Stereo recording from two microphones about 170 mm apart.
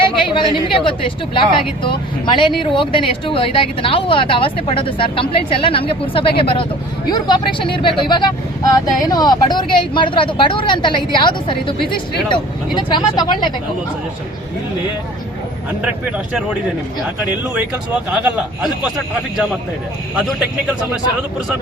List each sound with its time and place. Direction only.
0.3 s speech: 30° left (ahead or behind)
15.8 s speech: 5° right (ahead or behind)
18.1 s a man's voice: 5° right (ahead or behind)